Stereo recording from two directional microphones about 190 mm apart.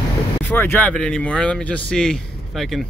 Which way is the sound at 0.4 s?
10° left (ahead or behind).